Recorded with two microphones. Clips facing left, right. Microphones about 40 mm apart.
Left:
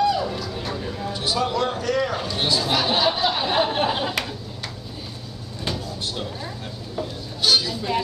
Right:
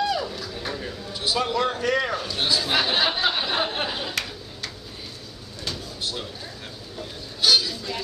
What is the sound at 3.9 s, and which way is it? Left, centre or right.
Speech, centre.